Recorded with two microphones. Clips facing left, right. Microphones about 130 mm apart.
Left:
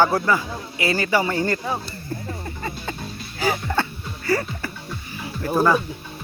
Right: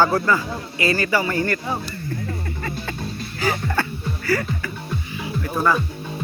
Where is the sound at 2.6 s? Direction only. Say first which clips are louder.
Right 2 dB; 15° left (ahead or behind).